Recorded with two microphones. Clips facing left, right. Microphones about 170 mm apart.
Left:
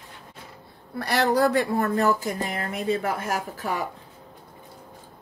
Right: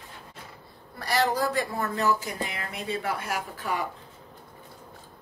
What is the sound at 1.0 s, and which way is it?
Speech, 65° left (ahead or behind).